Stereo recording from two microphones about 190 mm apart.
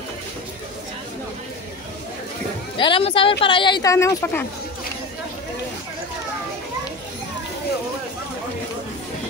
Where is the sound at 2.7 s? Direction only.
25° left (ahead or behind).